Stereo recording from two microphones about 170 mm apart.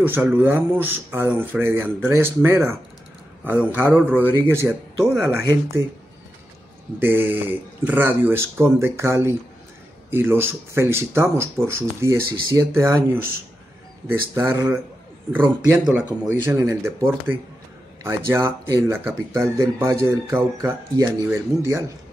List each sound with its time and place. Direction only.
0.0 s speech: 10° right (ahead or behind)
7.0 s speech: 10° right (ahead or behind)